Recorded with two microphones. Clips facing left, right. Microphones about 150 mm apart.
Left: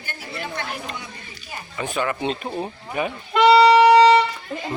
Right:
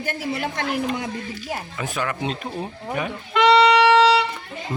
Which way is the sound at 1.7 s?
Centre (ahead or behind).